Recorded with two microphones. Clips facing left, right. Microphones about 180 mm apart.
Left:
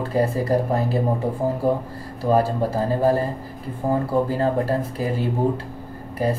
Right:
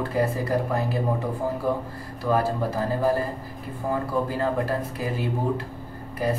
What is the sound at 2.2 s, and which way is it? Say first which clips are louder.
Speech: left 4 dB; 30° left (ahead or behind).